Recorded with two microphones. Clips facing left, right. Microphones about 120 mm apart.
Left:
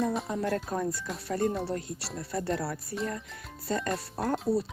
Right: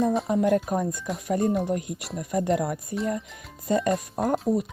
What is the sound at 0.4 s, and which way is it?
Speech, 20° right (ahead or behind).